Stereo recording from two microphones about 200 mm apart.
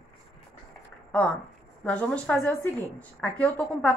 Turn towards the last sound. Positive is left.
turn(degrees=5)  # may be behind; listen again after turning